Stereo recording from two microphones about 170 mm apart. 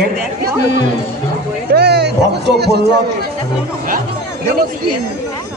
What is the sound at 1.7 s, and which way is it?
Speech, 75° right (ahead or behind).